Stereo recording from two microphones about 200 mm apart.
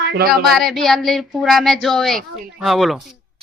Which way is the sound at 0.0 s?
55° right (ahead or behind).